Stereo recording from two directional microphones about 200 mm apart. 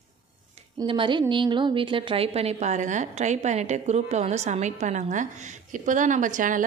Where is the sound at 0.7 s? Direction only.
25° right (ahead or behind).